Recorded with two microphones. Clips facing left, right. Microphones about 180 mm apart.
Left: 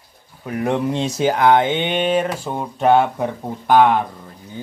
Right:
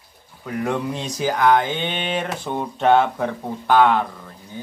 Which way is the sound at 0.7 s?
25° left (ahead or behind).